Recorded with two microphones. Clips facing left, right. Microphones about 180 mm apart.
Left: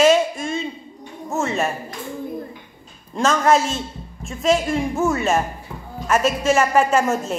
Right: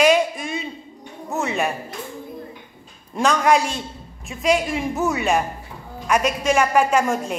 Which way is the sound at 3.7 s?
Centre (ahead or behind).